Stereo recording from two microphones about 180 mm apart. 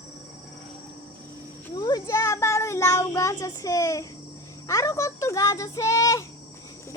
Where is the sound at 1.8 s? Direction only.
20° left (ahead or behind).